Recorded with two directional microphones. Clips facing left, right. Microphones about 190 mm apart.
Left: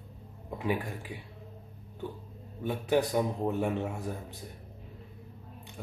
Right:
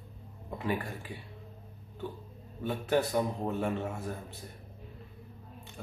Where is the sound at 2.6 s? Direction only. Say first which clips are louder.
Left 1 dB; 15° left (ahead or behind).